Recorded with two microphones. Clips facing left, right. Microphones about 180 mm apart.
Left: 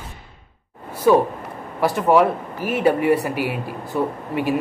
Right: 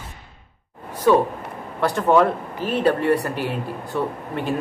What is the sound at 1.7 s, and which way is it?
Speech, 10° left (ahead or behind).